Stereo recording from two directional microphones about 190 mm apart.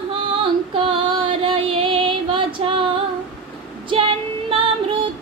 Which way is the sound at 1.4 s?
30° right (ahead or behind).